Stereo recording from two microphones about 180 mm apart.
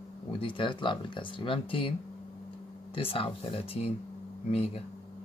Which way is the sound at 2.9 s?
30° left (ahead or behind).